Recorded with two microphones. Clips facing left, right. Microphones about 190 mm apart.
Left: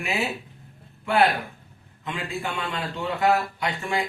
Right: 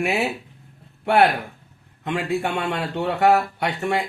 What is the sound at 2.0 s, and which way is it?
Speech, 70° right (ahead or behind).